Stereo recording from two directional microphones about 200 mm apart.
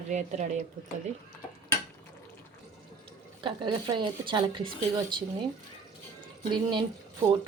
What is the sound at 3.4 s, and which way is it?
Speech, 25° right (ahead or behind).